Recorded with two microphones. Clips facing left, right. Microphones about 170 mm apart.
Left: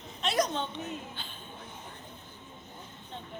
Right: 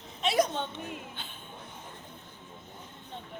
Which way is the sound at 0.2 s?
10° right (ahead or behind).